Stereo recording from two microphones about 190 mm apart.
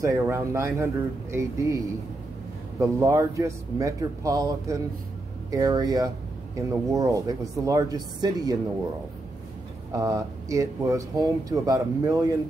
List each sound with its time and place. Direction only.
0.0 s speech: 15° right (ahead or behind)
9.9 s speech: 20° right (ahead or behind)